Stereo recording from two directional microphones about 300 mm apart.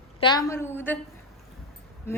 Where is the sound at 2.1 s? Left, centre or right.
Centre.